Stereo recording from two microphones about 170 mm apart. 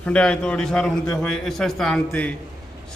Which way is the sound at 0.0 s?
5° left (ahead or behind).